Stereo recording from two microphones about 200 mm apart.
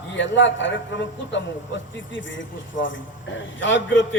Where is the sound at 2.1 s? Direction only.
70° left (ahead or behind).